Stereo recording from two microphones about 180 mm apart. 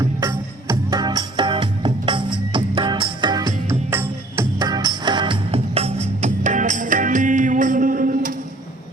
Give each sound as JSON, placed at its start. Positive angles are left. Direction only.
{"t": 0.0, "sound": "music", "side_deg": -20}